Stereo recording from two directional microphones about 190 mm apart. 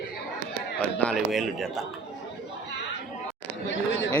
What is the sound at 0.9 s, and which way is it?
Speech, centre (ahead or behind).